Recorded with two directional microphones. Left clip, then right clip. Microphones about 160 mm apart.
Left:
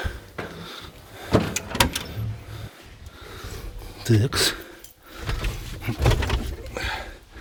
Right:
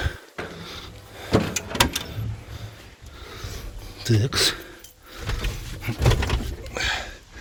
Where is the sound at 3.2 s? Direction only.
20° left (ahead or behind).